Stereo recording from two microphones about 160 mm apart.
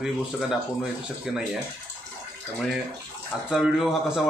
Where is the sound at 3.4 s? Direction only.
5° right (ahead or behind).